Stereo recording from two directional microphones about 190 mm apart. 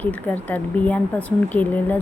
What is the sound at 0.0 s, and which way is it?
Speech, 10° left (ahead or behind).